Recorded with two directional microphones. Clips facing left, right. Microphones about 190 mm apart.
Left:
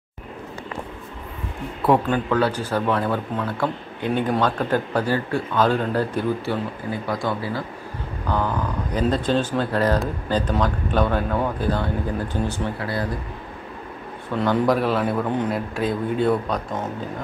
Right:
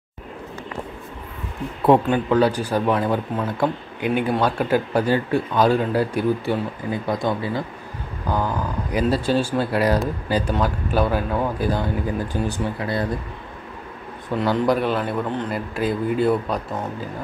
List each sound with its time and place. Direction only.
1.9 s speech: 20° right (ahead or behind)
14.4 s a man's voice: 5° right (ahead or behind)